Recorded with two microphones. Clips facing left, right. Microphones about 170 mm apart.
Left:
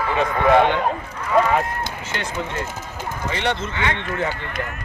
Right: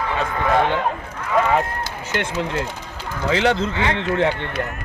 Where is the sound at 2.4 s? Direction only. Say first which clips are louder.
Right 3 dB; 90° right.